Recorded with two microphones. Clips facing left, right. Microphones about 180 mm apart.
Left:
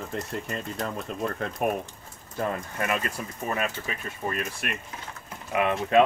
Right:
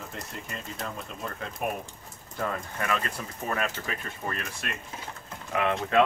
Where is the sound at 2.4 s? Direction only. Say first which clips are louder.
Left 3 dB; 20° left (ahead or behind).